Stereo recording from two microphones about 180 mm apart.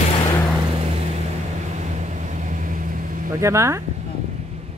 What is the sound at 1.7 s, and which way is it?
Vehicle, 40° right (ahead or behind).